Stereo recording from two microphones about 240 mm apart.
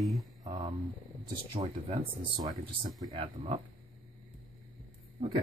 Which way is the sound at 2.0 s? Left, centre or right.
Centre.